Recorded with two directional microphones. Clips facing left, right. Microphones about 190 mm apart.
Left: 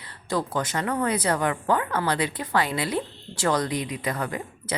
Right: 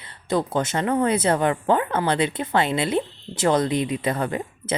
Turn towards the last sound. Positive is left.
turn(degrees=-25)  # may be behind; listen again after turning